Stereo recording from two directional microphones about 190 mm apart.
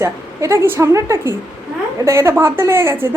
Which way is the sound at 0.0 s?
15° right (ahead or behind).